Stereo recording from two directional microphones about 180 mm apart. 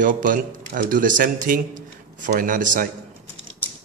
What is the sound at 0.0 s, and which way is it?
Speech, 50° right (ahead or behind).